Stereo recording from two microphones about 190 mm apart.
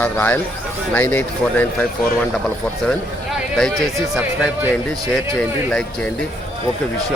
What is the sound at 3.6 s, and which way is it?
Speech, centre (ahead or behind).